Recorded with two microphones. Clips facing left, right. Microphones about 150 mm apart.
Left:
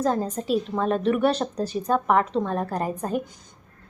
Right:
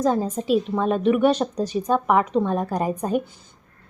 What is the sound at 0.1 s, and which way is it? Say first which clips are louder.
A woman's voice: right 3 dB; 10° right (ahead or behind).